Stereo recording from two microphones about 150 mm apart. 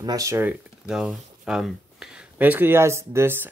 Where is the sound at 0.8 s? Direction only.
5° right (ahead or behind).